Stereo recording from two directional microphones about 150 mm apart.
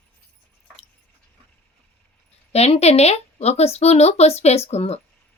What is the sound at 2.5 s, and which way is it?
Speech, 45° left (ahead or behind).